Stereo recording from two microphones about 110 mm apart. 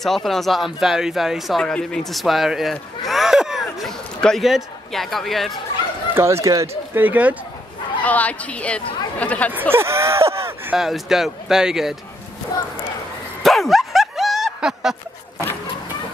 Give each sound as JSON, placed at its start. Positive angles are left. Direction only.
{"t": 0.0, "sound": "speech", "side_deg": 0}
{"t": 6.1, "sound": "speech", "side_deg": -25}
{"t": 8.0, "sound": "a woman's voice", "side_deg": 15}
{"t": 9.5, "sound": "speech", "side_deg": -20}
{"t": 10.7, "sound": "speech", "side_deg": -5}
{"t": 12.5, "sound": "a sound", "side_deg": 35}
{"t": 13.4, "sound": "a sound", "side_deg": 0}